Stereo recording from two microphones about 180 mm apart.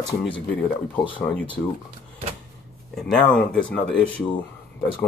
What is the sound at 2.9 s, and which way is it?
Speech, 5° left (ahead or behind).